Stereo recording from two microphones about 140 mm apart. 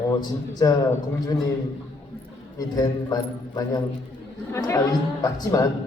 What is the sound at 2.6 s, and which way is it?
A man's voice, 25° left (ahead or behind).